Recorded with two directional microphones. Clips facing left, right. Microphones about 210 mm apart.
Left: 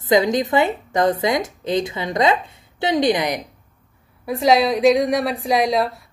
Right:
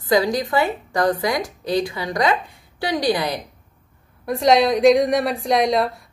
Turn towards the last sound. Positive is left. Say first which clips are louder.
# even
turn(degrees=0)  # may be behind; listen again after turning